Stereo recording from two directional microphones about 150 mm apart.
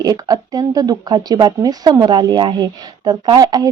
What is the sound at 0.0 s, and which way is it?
Speech, 25° right (ahead or behind).